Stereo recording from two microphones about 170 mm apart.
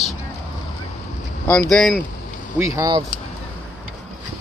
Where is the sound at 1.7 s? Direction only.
5° left (ahead or behind).